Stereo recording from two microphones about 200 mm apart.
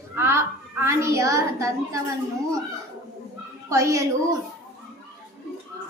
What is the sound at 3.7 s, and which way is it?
Speech, 15° right (ahead or behind).